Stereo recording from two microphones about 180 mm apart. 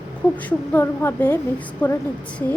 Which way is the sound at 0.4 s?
10° left (ahead or behind).